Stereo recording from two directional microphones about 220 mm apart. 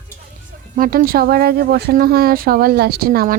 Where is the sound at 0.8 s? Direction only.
40° right (ahead or behind).